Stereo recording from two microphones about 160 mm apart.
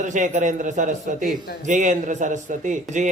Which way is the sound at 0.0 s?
50° right (ahead or behind).